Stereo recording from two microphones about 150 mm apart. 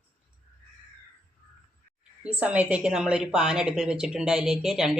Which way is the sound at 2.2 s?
10° right (ahead or behind).